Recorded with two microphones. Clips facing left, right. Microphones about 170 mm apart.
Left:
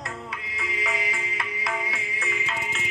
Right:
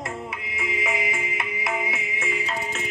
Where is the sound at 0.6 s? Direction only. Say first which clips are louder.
Right 3 dB; 25° right (ahead or behind).